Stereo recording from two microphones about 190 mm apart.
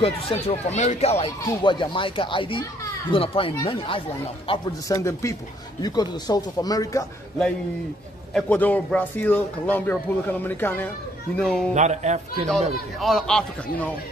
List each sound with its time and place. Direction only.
0.0 s speech: 30° left (ahead or behind)
8.3 s a man's voice: 5° left (ahead or behind)
11.7 s speech: 40° right (ahead or behind)
13.0 s a man's voice: centre (ahead or behind)